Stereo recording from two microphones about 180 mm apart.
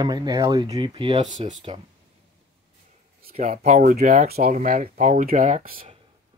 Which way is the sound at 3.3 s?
40° right (ahead or behind).